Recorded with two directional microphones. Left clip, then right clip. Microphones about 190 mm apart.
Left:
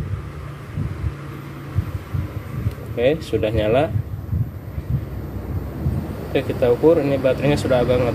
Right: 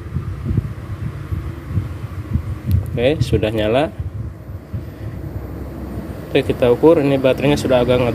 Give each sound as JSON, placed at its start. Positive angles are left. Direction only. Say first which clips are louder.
{"t": 3.0, "sound": "speech", "louder": "right 2 dB", "side_deg": -25}
{"t": 6.3, "sound": "speech", "louder": "right 4 dB", "side_deg": -35}